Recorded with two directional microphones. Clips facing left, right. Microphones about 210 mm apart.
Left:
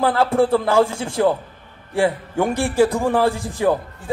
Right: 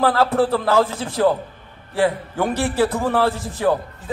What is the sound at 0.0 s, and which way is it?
A man's voice, 15° left (ahead or behind).